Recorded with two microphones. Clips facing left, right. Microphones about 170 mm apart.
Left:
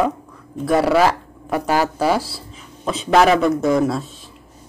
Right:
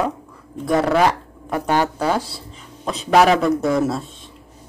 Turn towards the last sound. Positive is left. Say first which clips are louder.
# left 2 dB
turn(degrees=0)  # may be behind; listen again after turning